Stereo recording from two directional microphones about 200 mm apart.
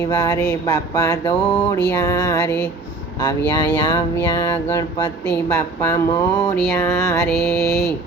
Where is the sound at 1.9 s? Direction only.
15° left (ahead or behind).